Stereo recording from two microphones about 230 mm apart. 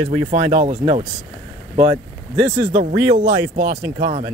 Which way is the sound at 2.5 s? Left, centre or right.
Right.